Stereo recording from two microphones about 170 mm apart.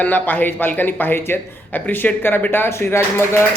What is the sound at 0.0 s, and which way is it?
A man's voice, 10° left (ahead or behind).